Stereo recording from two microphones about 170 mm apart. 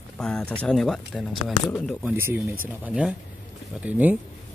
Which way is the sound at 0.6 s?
5° left (ahead or behind).